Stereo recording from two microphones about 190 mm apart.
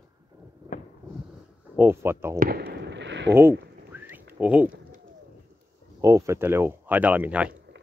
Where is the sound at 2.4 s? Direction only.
55° right (ahead or behind).